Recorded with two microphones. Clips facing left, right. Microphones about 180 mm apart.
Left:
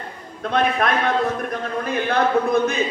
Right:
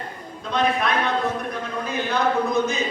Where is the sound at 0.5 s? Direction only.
50° left (ahead or behind).